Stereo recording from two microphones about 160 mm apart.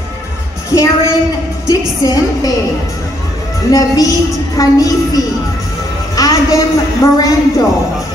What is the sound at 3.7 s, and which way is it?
Speech, 20° left (ahead or behind).